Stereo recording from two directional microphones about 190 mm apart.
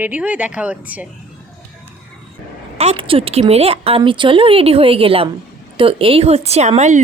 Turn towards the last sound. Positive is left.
turn(degrees=-40)  # may be behind; listen again after turning